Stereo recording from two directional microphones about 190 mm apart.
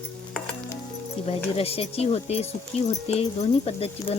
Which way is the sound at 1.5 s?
30° left (ahead or behind).